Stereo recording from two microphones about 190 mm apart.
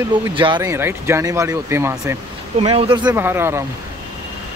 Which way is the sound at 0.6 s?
15° right (ahead or behind).